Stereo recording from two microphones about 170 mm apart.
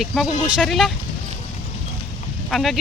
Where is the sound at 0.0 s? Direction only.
Centre (ahead or behind).